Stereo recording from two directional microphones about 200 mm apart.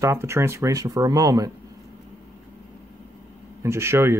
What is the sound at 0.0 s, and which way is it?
Speech, 15° right (ahead or behind).